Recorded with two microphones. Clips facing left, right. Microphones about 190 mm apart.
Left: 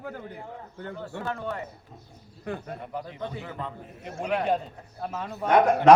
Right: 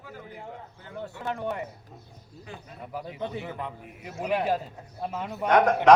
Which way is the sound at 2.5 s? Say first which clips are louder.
Left 10 dB; 60° left (ahead or behind).